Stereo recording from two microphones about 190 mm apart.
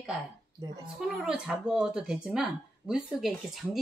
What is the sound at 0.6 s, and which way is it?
Speech, 20° right (ahead or behind).